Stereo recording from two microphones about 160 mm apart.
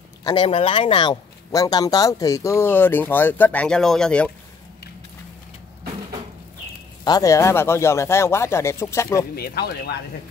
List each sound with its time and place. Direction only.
0.2 s speech: 30° left (ahead or behind); by 4.3 s 5° left (ahead or behind)
7.1 s speech: 20° left (ahead or behind)
9.3 s speech: 75° left (ahead or behind)